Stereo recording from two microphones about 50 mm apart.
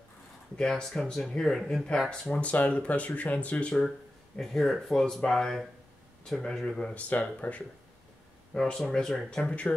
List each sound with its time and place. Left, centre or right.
0.6 s speech: centre
2.0 s speech: centre
4.4 s speech: centre
6.8 s speech: left
8.5 s speech: centre